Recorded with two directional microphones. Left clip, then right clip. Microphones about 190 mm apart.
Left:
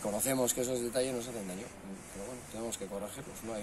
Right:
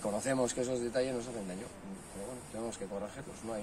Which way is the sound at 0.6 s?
25° right (ahead or behind).